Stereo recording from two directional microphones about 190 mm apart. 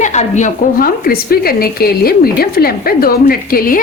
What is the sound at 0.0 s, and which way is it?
A woman's voice, 40° left (ahead or behind).